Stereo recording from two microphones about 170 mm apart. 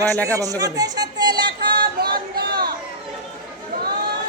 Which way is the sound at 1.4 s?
70° right (ahead or behind).